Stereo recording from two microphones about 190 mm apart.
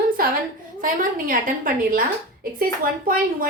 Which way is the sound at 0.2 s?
50° right (ahead or behind).